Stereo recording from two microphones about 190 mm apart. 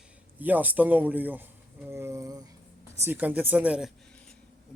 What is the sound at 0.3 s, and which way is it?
A man's voice, 10° right (ahead or behind).